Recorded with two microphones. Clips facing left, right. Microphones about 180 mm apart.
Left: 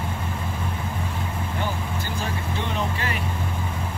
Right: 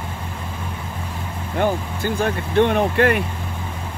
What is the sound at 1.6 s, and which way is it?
Speech, 55° right (ahead or behind).